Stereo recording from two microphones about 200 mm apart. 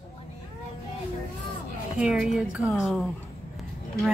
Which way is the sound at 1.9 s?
5° right (ahead or behind).